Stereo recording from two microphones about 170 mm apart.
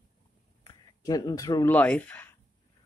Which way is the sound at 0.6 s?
20° left (ahead or behind).